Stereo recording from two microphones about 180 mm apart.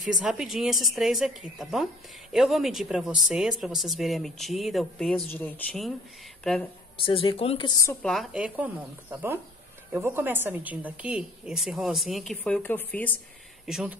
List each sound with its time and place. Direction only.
0.2 s a woman's voice: centre (ahead or behind)
7.0 s speech: 30° left (ahead or behind)
8.0 s a woman's voice: centre (ahead or behind)
13.7 s a woman's voice: centre (ahead or behind)